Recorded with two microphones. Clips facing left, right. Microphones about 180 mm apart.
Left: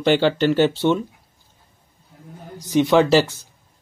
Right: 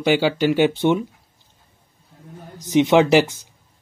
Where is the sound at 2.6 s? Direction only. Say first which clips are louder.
Right 1 dB; 20° right (ahead or behind).